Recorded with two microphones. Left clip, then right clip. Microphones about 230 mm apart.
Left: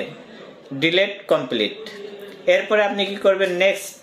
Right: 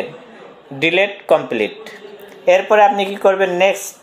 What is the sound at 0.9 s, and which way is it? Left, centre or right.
Speech, centre.